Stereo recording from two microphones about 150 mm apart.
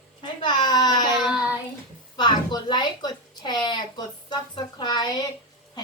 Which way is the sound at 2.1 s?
30° left (ahead or behind).